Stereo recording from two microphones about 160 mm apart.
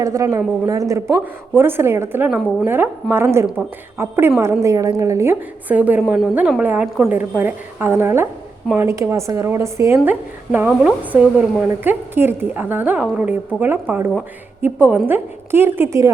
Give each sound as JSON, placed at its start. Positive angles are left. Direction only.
{"t": 0.0, "sound": "a woman's voice", "side_deg": -20}